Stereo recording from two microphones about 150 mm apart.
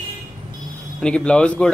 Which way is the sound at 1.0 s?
5° left (ahead or behind).